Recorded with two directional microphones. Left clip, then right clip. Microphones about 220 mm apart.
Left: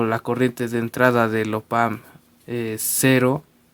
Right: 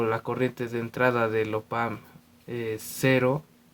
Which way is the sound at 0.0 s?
45° left (ahead or behind).